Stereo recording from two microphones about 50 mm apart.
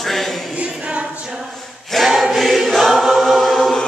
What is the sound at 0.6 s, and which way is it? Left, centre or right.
Choir, centre.